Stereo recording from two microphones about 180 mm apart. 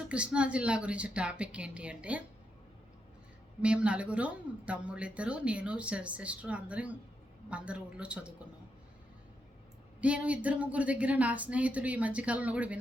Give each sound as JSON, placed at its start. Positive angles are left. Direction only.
{"t": 0.1, "sound": "speech", "side_deg": -5}
{"t": 3.6, "sound": "speech", "side_deg": -5}
{"t": 10.0, "sound": "speech", "side_deg": -5}